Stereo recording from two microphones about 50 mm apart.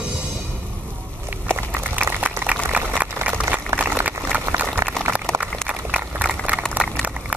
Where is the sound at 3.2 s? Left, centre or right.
Right.